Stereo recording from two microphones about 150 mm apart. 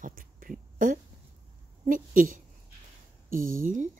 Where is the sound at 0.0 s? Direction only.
70° right (ahead or behind).